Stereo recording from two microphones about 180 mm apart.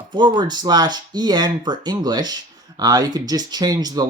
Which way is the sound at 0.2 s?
25° right (ahead or behind).